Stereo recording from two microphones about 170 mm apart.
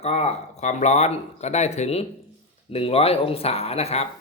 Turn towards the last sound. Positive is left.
turn(degrees=40)  # may be behind; listen again after turning